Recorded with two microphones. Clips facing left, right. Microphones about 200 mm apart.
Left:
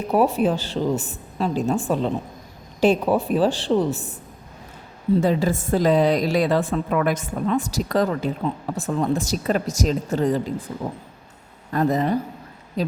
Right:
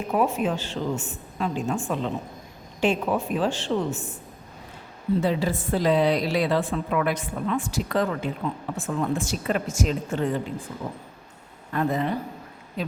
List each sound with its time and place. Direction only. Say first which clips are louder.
0.1 s a woman's voice: left 5 dB; 35° left (ahead or behind)
5.2 s a woman's voice: left 4 dB; 45° left (ahead or behind)
11.7 s a woman's voice: left 5 dB; 40° left (ahead or behind)